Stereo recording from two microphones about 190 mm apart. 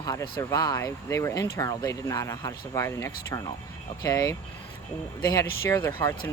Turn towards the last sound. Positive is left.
turn(degrees=15)  # may be behind; listen again after turning